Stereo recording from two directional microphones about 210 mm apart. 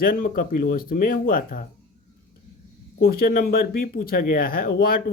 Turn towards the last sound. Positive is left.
turn(degrees=45)  # may be behind; listen again after turning